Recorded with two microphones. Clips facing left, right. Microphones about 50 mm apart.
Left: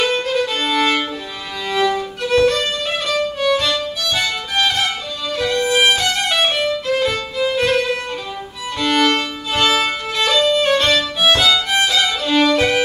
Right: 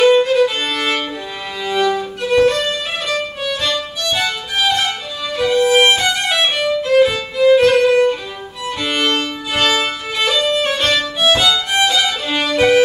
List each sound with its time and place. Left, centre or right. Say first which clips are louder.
0.0 s violin: right 7 dB; centre
3.1 s music: left 5 dB; centre
5.3 s violin: right 4 dB; centre